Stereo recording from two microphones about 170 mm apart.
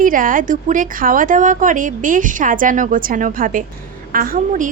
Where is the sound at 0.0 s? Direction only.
55° right (ahead or behind).